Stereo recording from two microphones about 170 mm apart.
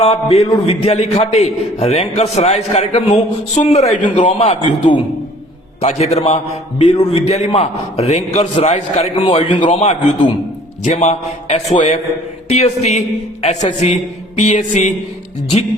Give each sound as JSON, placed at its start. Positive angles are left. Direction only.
{"t": 0.0, "sound": "a man's voice", "side_deg": 40}